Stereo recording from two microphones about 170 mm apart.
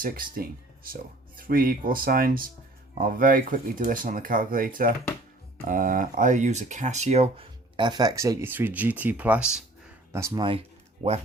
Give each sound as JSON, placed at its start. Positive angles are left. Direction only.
{"t": 0.0, "sound": "speech", "side_deg": -60}
{"t": 7.8, "sound": "speech", "side_deg": -25}
{"t": 10.1, "sound": "speech", "side_deg": -15}
{"t": 11.0, "sound": "speech", "side_deg": -40}